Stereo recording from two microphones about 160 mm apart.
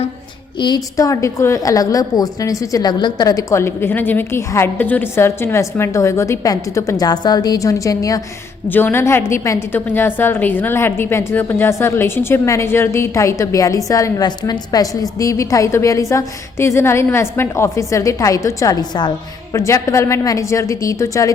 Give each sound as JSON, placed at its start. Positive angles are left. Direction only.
{"t": 0.6, "sound": "a woman's voice", "side_deg": 25}